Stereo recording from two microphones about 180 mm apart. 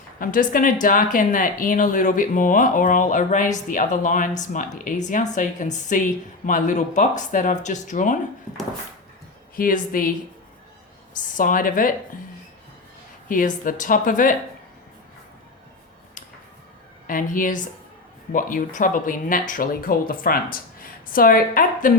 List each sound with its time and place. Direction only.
0.2 s speech: 50° left (ahead or behind)
9.6 s speech: 50° left (ahead or behind)
11.3 s speech: 50° left (ahead or behind)
13.2 s speech: 50° left (ahead or behind)
17.1 s speech: 50° left (ahead or behind)